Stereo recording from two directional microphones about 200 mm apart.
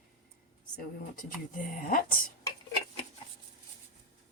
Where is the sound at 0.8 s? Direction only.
45° left (ahead or behind).